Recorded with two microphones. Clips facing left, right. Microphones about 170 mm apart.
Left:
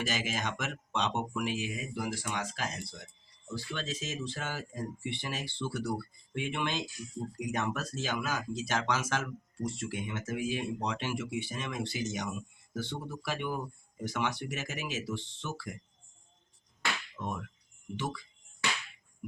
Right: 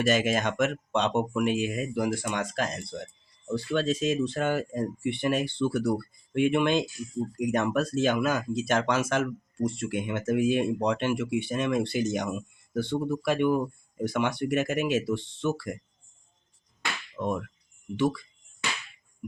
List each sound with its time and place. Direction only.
0.0 s speech: 60° right (ahead or behind)
17.2 s a sound: 55° right (ahead or behind)
17.9 s speech: 60° right (ahead or behind)